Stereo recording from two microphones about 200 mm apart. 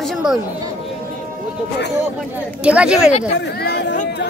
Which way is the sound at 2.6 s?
5° right (ahead or behind).